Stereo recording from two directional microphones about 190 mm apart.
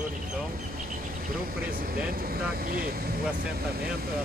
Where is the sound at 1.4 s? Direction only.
50° right (ahead or behind).